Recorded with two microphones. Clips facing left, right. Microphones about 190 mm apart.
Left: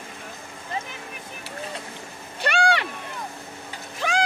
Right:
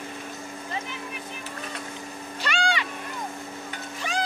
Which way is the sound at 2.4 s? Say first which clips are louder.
Left 5 dB; 60° left (ahead or behind).